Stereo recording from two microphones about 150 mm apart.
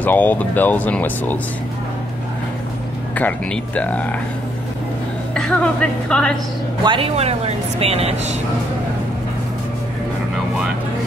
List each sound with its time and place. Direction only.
0.0 s speech: 10° left (ahead or behind)
3.2 s speech: 10° left (ahead or behind)
5.3 s a woman's voice: 5° left (ahead or behind)
6.8 s speech: 30° right (ahead or behind)
7.2 s speech: 45° right (ahead or behind)